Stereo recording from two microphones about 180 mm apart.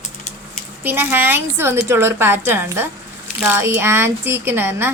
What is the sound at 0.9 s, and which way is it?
Speech, 10° right (ahead or behind).